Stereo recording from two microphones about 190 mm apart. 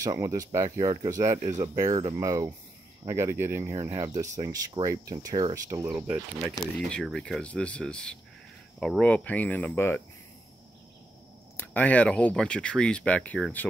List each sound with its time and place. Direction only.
0.0 s speech: 20° right (ahead or behind)
6.9 s speech: 5° left (ahead or behind)
11.5 s speech: 10° left (ahead or behind)